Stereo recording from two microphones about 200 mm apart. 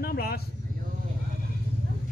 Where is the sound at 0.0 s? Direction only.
50° left (ahead or behind).